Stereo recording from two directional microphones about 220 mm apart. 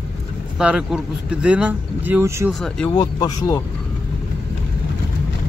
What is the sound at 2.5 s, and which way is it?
Speech, 5° left (ahead or behind).